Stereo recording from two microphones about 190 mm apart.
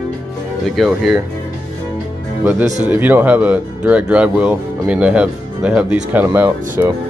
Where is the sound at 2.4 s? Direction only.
10° right (ahead or behind).